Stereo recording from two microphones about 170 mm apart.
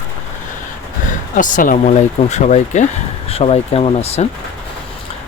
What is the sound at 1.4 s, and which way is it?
Speech, 50° left (ahead or behind).